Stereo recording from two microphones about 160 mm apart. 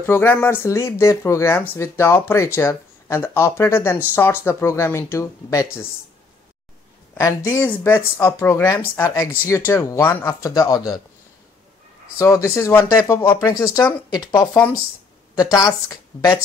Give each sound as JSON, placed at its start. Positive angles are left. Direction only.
{"t": 0.0, "sound": "speech", "side_deg": 15}
{"t": 7.2, "sound": "speech", "side_deg": 20}
{"t": 12.2, "sound": "speech", "side_deg": 20}
{"t": 14.4, "sound": "speech", "side_deg": 10}
{"t": 15.5, "sound": "speech", "side_deg": 25}